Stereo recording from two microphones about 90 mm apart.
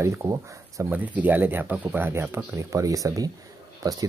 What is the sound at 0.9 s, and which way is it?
Speech, 20° right (ahead or behind).